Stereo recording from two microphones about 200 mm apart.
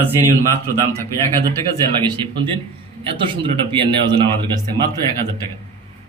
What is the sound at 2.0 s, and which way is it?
Speech, 25° right (ahead or behind).